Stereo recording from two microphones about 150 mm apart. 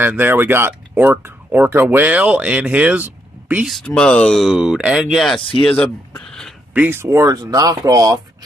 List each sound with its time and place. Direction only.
0.0 s speech: 15° right (ahead or behind)
3.7 s speech: 5° left (ahead or behind)
6.1 s a sound: 5° left (ahead or behind)
6.7 s speech: 10° right (ahead or behind)